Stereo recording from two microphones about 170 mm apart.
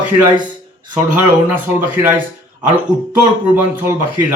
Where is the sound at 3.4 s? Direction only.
10° right (ahead or behind).